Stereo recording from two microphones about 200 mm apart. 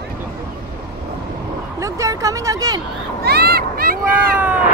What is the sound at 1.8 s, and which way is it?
Speech, 15° right (ahead or behind).